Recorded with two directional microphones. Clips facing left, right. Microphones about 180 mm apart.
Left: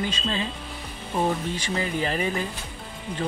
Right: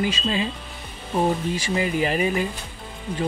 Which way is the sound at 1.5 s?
10° right (ahead or behind).